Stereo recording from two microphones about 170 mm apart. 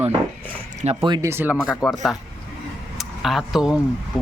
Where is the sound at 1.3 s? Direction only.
10° right (ahead or behind).